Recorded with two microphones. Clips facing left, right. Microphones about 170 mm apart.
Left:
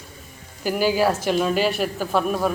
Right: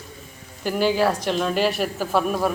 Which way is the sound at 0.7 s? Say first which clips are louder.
Even; 5° left (ahead or behind).